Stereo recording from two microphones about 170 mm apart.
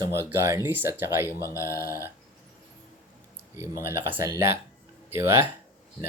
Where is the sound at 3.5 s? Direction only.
15° right (ahead or behind).